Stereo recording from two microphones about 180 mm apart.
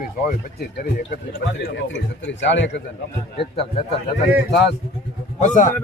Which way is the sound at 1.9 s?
90° left.